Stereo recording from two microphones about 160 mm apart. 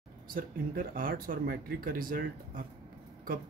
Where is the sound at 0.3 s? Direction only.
60° right (ahead or behind).